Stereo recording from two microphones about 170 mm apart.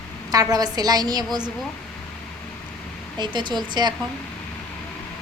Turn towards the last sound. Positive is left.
turn(degrees=-25)  # may be behind; listen again after turning